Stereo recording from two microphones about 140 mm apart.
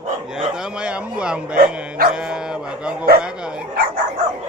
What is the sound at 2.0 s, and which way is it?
Bow-wow, 90° right.